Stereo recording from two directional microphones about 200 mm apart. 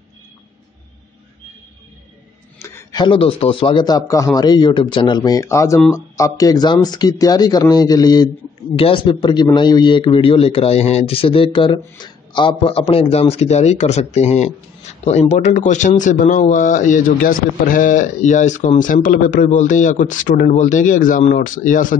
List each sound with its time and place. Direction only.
2.6 s a man's voice: 15° left (ahead or behind); by 21.9 s 40° left (ahead or behind)